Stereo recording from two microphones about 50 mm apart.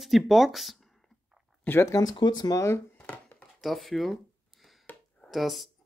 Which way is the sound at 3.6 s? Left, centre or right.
Centre.